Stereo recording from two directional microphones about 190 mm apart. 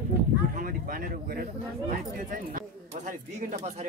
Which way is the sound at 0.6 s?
45° right (ahead or behind).